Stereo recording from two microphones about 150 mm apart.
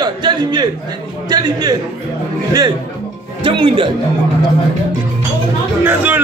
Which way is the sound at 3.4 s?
35° right (ahead or behind).